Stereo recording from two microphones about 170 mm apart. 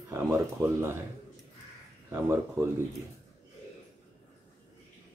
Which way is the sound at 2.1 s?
15° right (ahead or behind).